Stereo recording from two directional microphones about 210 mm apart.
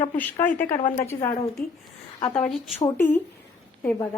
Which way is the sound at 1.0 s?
15° left (ahead or behind).